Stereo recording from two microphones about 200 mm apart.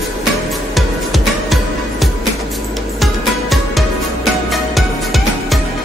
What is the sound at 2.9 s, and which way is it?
Music, centre (ahead or behind).